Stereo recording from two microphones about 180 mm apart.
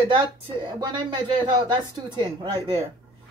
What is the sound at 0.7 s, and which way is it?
Speech, 25° right (ahead or behind).